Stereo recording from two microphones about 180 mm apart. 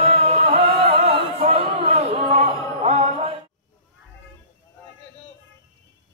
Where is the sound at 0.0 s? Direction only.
35° right (ahead or behind).